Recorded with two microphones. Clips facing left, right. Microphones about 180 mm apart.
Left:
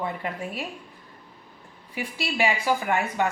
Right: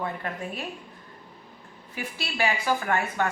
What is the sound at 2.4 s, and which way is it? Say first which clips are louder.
Speech: left 1 dB; 15° left (ahead or behind).